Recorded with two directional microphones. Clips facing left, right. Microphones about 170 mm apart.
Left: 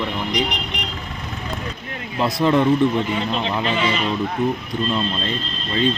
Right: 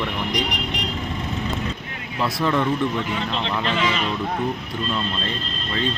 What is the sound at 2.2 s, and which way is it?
Speech, 20° left (ahead or behind).